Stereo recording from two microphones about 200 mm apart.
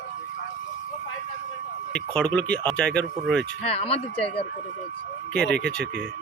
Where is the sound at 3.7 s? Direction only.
30° left (ahead or behind).